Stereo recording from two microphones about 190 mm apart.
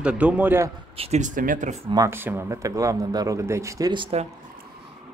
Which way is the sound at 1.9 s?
15° right (ahead or behind).